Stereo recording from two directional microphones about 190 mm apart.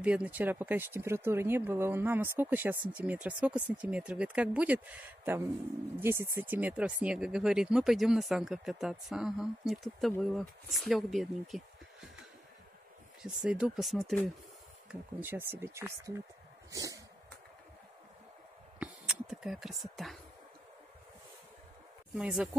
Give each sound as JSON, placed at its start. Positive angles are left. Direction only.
{"t": 0.0, "sound": "speech", "side_deg": -5}
{"t": 13.2, "sound": "speech", "side_deg": -5}
{"t": 18.8, "sound": "speech", "side_deg": -5}
{"t": 22.1, "sound": "speech", "side_deg": -5}